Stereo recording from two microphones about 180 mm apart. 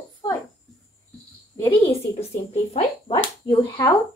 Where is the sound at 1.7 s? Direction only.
35° left (ahead or behind).